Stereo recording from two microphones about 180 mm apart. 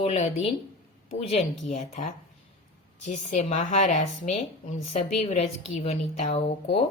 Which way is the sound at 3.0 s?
40° left (ahead or behind).